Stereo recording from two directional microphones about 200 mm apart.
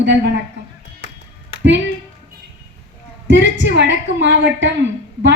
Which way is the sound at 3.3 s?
65° right (ahead or behind).